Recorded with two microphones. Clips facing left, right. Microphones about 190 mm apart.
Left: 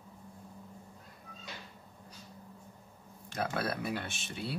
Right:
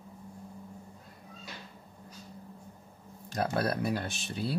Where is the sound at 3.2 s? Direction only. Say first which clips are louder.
Right 4 dB; 35° right (ahead or behind).